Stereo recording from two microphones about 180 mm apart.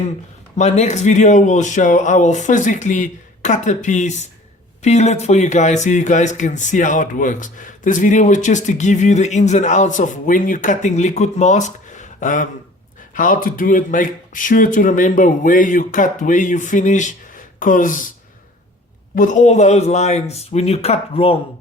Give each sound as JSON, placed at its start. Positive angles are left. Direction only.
{"t": 0.5, "sound": "speech", "side_deg": 40}
{"t": 19.1, "sound": "speech", "side_deg": 45}